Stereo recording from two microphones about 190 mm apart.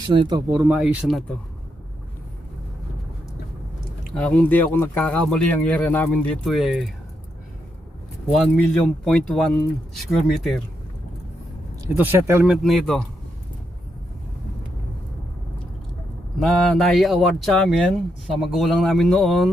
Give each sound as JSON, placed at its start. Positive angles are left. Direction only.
{"t": 0.1, "sound": "speech", "side_deg": -25}
{"t": 0.5, "sound": "speech", "side_deg": -10}
{"t": 4.2, "sound": "speech", "side_deg": 5}
{"t": 8.4, "sound": "speech", "side_deg": 0}
{"t": 11.9, "sound": "speech", "side_deg": -10}
{"t": 12.6, "sound": "speech", "side_deg": 0}
{"t": 16.4, "sound": "speech", "side_deg": 0}